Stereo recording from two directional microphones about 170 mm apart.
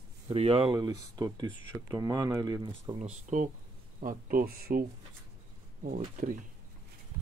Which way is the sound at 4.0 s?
55° right (ahead or behind).